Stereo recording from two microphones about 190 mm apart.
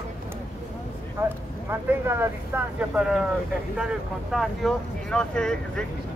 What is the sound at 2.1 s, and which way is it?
Speech, 10° right (ahead or behind).